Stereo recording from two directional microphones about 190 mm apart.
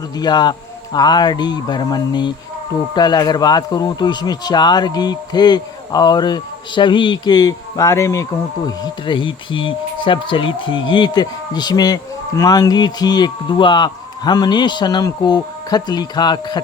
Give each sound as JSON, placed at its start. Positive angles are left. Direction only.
{"t": 0.2, "sound": "speech", "side_deg": 20}